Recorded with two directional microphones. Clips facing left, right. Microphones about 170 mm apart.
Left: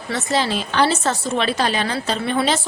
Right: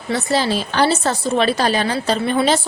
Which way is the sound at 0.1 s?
35° right (ahead or behind).